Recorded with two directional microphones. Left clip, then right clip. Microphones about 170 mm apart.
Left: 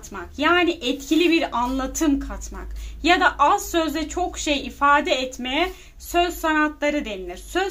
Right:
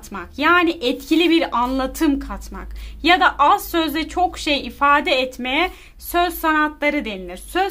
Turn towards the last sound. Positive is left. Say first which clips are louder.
# right 3 dB
turn(degrees=-25)  # may be behind; listen again after turning